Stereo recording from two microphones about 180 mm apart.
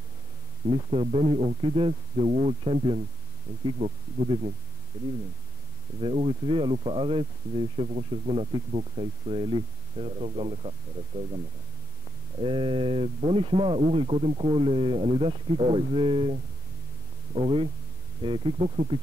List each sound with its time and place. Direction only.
0.7 s speech: 30° right (ahead or behind)
6.0 s speech: 30° right (ahead or behind)
12.4 s speech: 30° right (ahead or behind)